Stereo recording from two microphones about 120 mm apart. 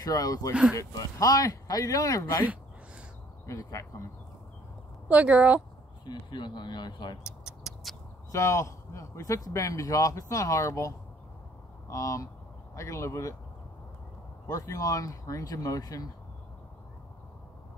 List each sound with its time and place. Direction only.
0.0 s speech: 30° left (ahead or behind)
3.4 s speech: 25° left (ahead or behind)
5.0 s speech: 10° right (ahead or behind)
6.0 s speech: 40° left (ahead or behind)
7.4 s a sound: 5° right (ahead or behind)
8.3 s speech: 25° left (ahead or behind)
14.5 s speech: 25° left (ahead or behind)